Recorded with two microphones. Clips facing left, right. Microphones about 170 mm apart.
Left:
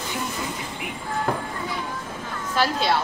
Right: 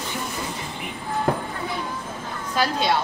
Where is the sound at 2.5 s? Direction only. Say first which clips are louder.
Even; centre (ahead or behind).